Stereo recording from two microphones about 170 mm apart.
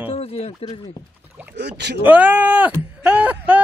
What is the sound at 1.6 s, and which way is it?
Speech, 90° right.